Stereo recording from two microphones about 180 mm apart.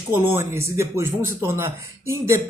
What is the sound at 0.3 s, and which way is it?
A man's voice, 15° right (ahead or behind).